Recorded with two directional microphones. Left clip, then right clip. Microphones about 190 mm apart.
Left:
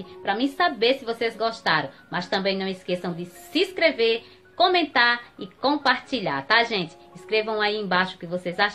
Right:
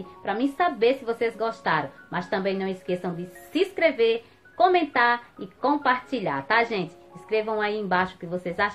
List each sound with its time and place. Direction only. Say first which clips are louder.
0.2 s a woman's voice: left 2 dB; 5° left (ahead or behind)